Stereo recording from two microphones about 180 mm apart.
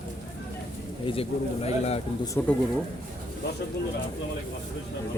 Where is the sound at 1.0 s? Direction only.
30° left (ahead or behind).